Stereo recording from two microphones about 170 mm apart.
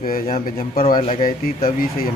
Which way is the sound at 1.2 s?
55° left (ahead or behind).